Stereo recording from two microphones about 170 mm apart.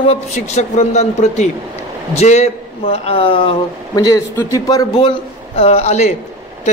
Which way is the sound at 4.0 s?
20° left (ahead or behind).